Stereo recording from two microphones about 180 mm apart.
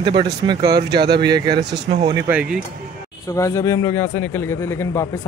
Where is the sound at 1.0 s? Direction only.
65° right (ahead or behind).